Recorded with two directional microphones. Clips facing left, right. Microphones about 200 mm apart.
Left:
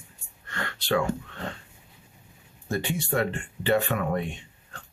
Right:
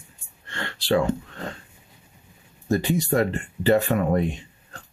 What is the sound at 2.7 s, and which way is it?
Speech, 40° right (ahead or behind).